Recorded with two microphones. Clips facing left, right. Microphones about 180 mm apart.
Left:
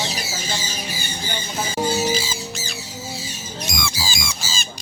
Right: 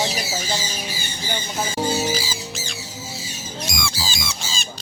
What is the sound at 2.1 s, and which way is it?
Music, 25° left (ahead or behind).